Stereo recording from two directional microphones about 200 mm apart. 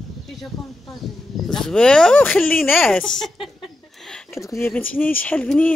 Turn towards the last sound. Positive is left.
turn(degrees=5)  # may be behind; listen again after turning